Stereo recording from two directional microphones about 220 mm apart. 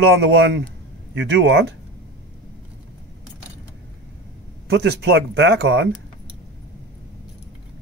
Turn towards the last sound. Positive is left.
turn(degrees=-50)  # may be behind; listen again after turning